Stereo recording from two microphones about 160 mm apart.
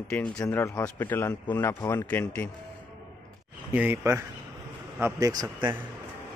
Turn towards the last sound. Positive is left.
turn(degrees=-20)  # may be behind; listen again after turning